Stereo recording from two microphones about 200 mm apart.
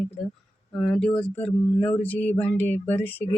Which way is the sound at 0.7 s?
Centre (ahead or behind).